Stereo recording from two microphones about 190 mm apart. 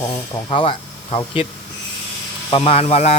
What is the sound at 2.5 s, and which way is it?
Speech, 30° left (ahead or behind).